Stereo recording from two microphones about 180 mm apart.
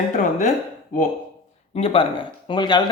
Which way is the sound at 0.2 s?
45° left (ahead or behind).